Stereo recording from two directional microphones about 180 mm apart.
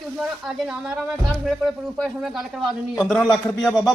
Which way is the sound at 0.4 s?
5° right (ahead or behind).